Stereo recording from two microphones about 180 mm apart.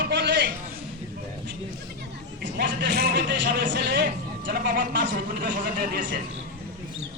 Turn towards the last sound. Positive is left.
turn(degrees=-50)  # may be behind; listen again after turning